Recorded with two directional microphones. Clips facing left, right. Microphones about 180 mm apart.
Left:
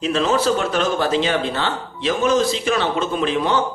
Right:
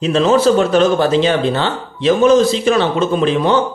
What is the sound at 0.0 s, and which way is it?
A man's voice, 25° right (ahead or behind).